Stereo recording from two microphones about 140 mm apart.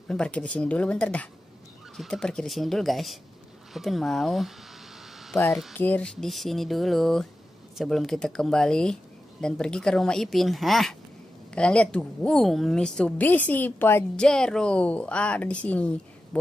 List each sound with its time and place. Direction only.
0.1 s a woman's voice: 5° left (ahead or behind)
5.3 s a woman's voice: 20° left (ahead or behind)